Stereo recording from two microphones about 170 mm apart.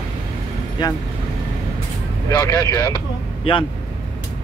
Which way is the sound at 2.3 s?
20° left (ahead or behind).